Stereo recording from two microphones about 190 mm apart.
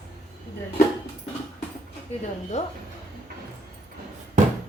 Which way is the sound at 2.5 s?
40° left (ahead or behind).